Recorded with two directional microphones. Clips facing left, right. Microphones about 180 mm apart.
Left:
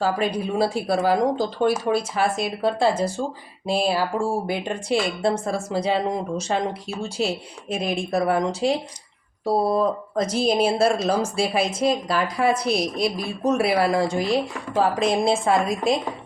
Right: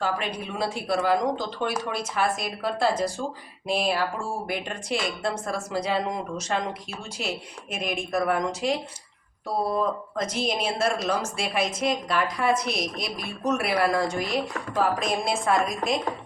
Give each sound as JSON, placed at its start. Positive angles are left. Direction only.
{"t": 0.0, "sound": "a woman's voice", "side_deg": 35}